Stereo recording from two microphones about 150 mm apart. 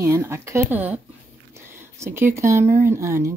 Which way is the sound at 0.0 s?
20° right (ahead or behind).